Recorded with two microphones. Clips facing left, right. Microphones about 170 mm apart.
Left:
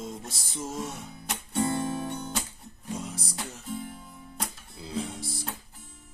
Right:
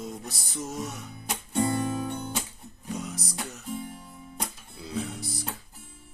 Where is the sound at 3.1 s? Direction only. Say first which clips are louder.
Right 1 dB; 30° left (ahead or behind).